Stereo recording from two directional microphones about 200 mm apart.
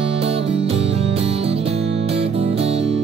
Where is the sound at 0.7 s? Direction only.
30° right (ahead or behind).